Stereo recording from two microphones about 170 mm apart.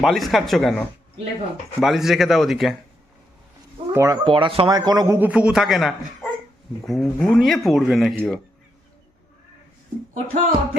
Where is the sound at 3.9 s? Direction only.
15° right (ahead or behind).